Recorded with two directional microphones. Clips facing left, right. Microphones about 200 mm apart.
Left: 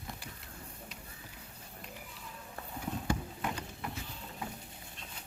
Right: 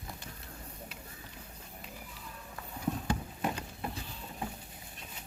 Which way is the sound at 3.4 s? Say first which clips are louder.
Right 3 dB; 25° right (ahead or behind).